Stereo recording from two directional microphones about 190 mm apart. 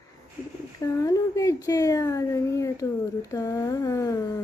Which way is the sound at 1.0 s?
15° left (ahead or behind).